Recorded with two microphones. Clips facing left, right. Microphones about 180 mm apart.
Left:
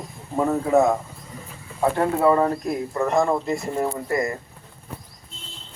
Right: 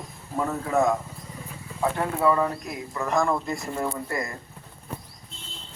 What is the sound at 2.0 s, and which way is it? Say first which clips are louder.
A man's voice: left 4 dB; 30° left (ahead or behind).